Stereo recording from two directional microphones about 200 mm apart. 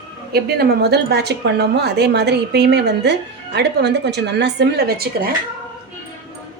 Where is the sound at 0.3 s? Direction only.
55° right (ahead or behind).